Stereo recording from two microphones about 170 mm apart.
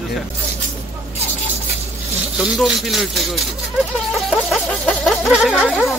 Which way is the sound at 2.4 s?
Centre (ahead or behind).